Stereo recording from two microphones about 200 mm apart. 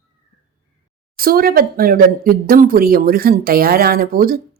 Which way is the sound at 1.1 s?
45° right (ahead or behind).